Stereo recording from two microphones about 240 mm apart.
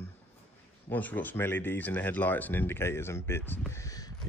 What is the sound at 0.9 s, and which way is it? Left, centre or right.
Speech, centre.